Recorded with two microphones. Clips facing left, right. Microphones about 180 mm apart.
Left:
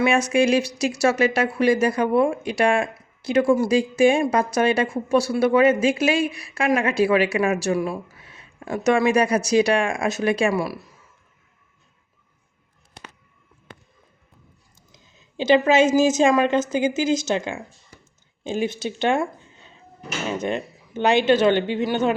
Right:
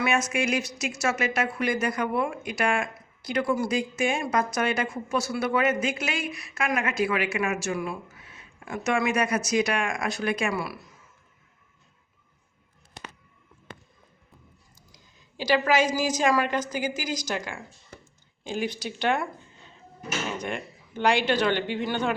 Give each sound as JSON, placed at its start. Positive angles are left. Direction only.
{"t": 0.0, "sound": "speech", "side_deg": 30}
{"t": 14.8, "sound": "a woman's voice", "side_deg": 25}
{"t": 20.4, "sound": "speech", "side_deg": 25}